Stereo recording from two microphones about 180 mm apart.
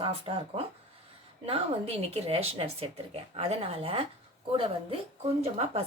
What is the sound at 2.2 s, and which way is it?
A woman's voice, 35° right (ahead or behind).